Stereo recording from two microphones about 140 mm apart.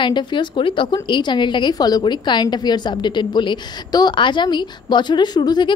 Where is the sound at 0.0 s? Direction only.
35° left (ahead or behind).